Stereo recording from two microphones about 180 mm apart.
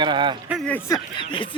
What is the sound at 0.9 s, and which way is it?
Speech, 25° left (ahead or behind).